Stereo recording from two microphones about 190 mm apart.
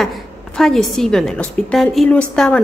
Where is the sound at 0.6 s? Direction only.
Centre (ahead or behind).